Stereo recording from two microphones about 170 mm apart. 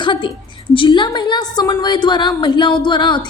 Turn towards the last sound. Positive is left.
turn(degrees=25)  # may be behind; listen again after turning